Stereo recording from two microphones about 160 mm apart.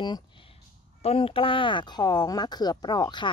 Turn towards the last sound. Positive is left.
turn(degrees=30)  # may be behind; listen again after turning